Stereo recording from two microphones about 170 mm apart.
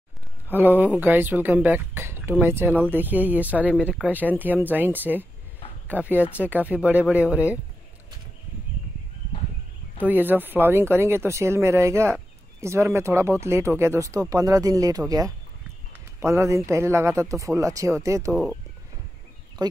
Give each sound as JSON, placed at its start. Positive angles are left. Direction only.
{"t": 0.5, "sound": "speech", "side_deg": -10}
{"t": 9.9, "sound": "speech", "side_deg": -10}